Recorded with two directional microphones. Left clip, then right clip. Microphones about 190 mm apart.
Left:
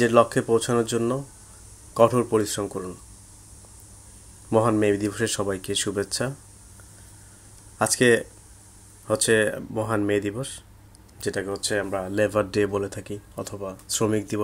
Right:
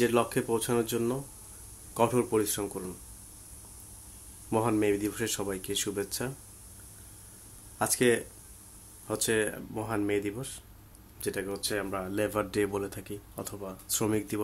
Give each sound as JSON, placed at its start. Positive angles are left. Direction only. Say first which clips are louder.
{"t": 0.0, "sound": "speech", "louder": "left 8 dB", "side_deg": 25}
{"t": 4.5, "sound": "speech", "louder": "left 7 dB", "side_deg": 20}
{"t": 7.8, "sound": "speech", "louder": "left 7 dB", "side_deg": 25}